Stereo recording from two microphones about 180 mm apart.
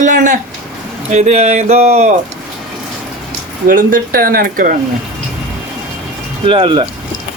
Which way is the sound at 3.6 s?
50° right (ahead or behind).